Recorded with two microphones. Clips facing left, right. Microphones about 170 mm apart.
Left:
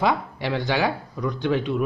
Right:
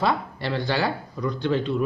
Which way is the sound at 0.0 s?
15° left (ahead or behind).